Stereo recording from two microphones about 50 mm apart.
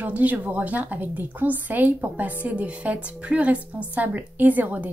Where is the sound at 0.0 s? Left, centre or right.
Right.